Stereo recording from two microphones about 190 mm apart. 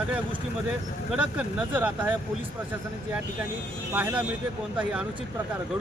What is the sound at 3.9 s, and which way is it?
Speech, 5° right (ahead or behind).